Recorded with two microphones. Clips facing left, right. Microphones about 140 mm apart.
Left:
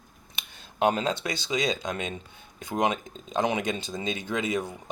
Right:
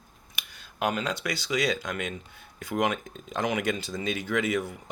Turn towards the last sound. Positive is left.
turn(degrees=20)  # may be behind; listen again after turning